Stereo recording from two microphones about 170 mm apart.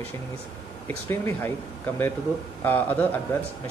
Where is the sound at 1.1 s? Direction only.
15° left (ahead or behind).